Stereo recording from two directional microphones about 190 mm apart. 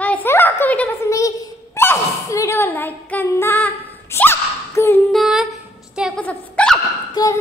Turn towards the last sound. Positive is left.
turn(degrees=20)  # may be behind; listen again after turning